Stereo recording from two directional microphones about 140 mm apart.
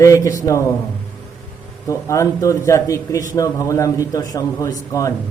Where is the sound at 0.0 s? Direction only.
25° left (ahead or behind).